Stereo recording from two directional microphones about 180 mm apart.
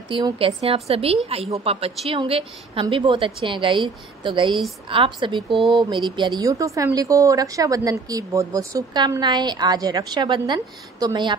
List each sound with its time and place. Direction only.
0.1 s a woman's voice: 25° right (ahead or behind)
5.5 s speech: centre (ahead or behind)
5.8 s speech: 25° right (ahead or behind)